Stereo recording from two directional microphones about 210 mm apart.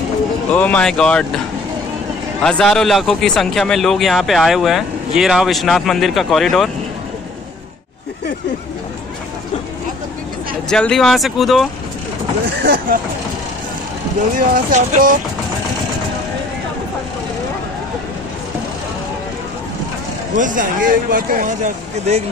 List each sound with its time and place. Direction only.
0.5 s a man's voice: 5° left (ahead or behind)
2.4 s a man's voice: 5° left (ahead or behind)
10.7 s a man's voice: 5° left (ahead or behind)
12.6 s speech: 50° right (ahead or behind)
14.3 s speech: 40° right (ahead or behind)
20.3 s speech: 40° right (ahead or behind)